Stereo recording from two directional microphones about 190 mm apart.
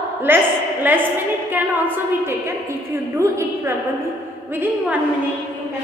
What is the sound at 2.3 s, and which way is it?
A woman's voice, 15° right (ahead or behind).